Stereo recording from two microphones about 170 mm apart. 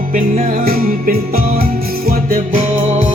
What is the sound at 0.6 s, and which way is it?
Music, 60° right (ahead or behind).